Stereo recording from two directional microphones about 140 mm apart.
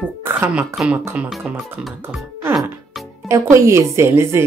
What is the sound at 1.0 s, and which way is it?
Speech, 15° right (ahead or behind).